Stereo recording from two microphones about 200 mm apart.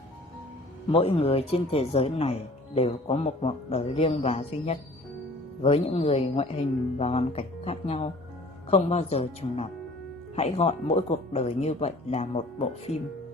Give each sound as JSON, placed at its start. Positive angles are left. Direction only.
{"t": 0.9, "sound": "a man's voice", "side_deg": 30}